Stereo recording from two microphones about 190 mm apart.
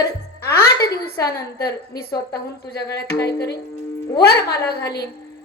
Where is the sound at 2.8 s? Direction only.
60° left (ahead or behind).